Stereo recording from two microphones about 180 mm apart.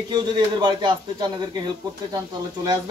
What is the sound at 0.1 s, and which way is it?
Speech, 25° right (ahead or behind).